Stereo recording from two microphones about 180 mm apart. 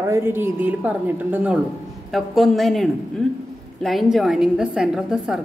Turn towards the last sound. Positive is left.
turn(degrees=-5)  # may be behind; listen again after turning